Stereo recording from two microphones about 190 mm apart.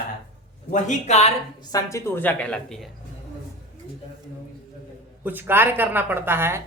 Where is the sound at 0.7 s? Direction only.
40° left (ahead or behind).